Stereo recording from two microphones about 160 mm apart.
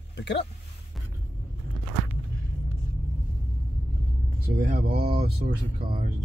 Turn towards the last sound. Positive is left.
turn(degrees=-65)  # may be behind; listen again after turning